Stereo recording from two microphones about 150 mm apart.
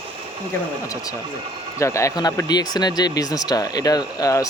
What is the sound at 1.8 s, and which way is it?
Speech, 20° left (ahead or behind).